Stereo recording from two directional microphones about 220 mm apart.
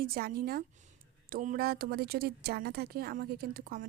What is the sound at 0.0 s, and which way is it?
A woman's voice, 45° right (ahead or behind).